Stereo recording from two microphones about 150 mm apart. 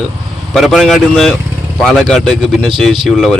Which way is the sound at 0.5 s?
Centre (ahead or behind).